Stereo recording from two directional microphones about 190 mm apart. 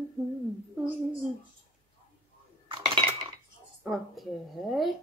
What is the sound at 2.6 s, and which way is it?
Cutlery, 25° right (ahead or behind).